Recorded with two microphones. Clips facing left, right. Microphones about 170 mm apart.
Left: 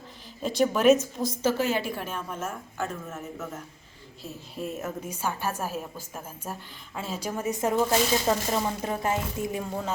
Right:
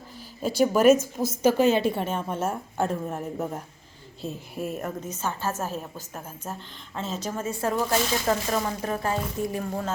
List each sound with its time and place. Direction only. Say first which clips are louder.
0.4 s a woman's voice: right 2 dB; 5° right (ahead or behind); by 3.6 s 35° right (ahead or behind)
4.5 s a woman's voice: right 1 dB; centre (ahead or behind)
5.0 s speech: left 1 dB; 10° left (ahead or behind)